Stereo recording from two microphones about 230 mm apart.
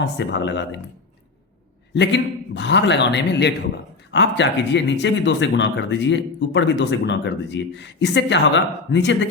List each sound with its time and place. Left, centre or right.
0.0 s speech: left
1.9 s speech: left